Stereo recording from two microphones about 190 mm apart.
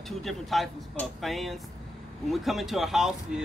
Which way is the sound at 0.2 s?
Centre (ahead or behind).